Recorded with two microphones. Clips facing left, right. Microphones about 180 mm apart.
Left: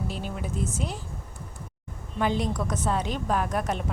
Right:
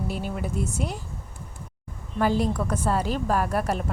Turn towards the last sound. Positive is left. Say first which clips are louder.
# right 2 dB
turn(degrees=-5)  # may be behind; listen again after turning